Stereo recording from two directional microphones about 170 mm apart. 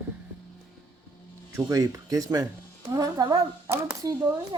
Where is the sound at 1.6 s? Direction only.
20° right (ahead or behind).